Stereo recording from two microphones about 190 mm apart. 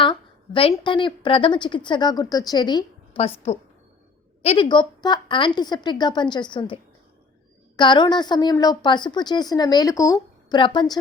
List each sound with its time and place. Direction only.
0.0 s a woman's voice: 25° left (ahead or behind)
7.8 s a woman's voice: 25° left (ahead or behind)